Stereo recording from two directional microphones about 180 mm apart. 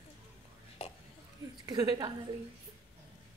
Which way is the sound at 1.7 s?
20° right (ahead or behind).